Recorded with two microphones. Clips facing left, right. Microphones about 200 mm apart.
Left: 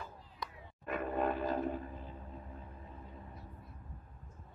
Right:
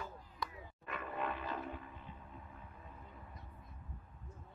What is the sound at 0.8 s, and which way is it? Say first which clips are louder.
Music: left 7 dB; 45° left (ahead or behind).